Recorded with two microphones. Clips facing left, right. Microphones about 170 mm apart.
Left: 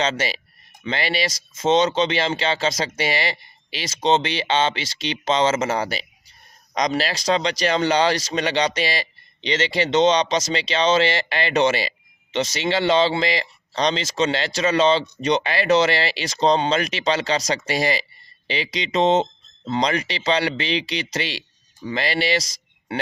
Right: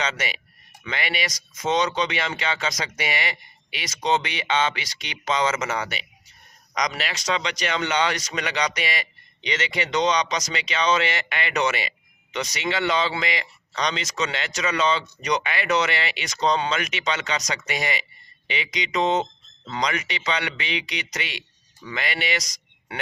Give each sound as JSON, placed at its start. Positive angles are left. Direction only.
{"t": 0.0, "sound": "speech", "side_deg": 30}